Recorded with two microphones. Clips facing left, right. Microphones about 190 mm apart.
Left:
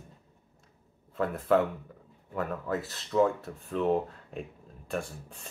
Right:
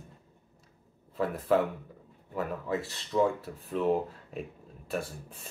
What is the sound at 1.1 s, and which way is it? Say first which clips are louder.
Speech: left 1 dB; centre (ahead or behind).